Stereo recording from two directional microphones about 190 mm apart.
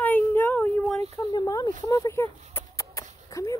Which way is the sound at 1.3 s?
20° left (ahead or behind).